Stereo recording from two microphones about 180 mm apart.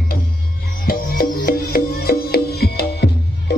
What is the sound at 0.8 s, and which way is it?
Music, 55° left (ahead or behind).